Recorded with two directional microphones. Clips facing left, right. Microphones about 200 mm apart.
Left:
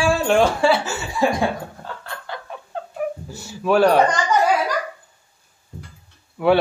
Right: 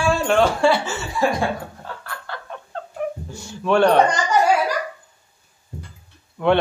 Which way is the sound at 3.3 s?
5° left (ahead or behind).